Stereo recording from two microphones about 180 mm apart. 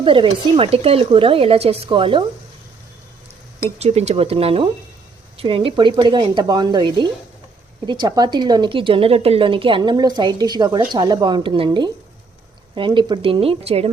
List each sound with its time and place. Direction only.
0.0 s speech: 30° right (ahead or behind)
3.8 s a woman's voice: 35° right (ahead or behind)